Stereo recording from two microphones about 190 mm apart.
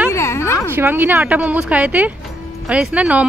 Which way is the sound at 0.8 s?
10° right (ahead or behind).